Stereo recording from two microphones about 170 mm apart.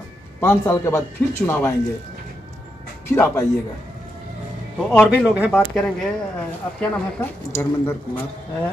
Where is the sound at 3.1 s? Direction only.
15° left (ahead or behind).